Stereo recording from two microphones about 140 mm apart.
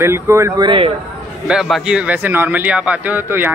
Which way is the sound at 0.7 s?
40° right (ahead or behind).